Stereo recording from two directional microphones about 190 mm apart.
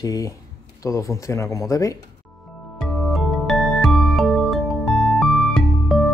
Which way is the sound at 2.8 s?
Centre (ahead or behind).